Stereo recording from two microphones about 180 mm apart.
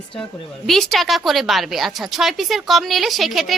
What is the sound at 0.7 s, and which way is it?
A woman's voice, centre (ahead or behind).